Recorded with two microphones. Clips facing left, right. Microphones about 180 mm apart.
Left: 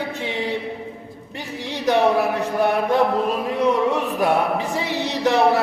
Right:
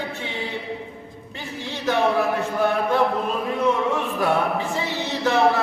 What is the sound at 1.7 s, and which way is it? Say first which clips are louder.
Speech: left 3 dB; 15° left (ahead or behind).